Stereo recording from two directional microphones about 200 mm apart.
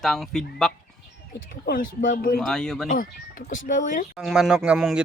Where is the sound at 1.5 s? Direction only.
45° left (ahead or behind).